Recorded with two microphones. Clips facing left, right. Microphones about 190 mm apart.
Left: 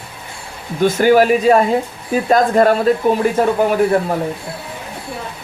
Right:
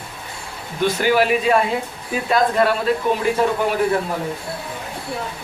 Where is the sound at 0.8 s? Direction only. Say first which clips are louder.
Left 6 dB; 45° left (ahead or behind).